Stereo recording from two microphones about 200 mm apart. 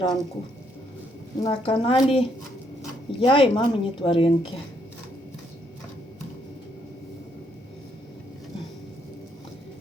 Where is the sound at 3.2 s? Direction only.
25° left (ahead or behind).